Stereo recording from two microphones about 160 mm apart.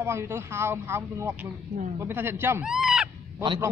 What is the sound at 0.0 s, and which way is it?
Speech, 15° right (ahead or behind).